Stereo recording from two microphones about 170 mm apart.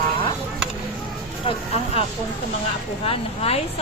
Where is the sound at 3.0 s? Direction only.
35° left (ahead or behind).